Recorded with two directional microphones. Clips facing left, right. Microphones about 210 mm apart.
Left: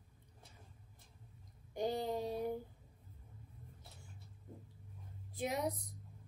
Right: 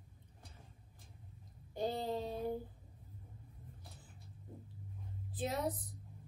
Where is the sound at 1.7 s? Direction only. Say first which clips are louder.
Even; 15° left (ahead or behind).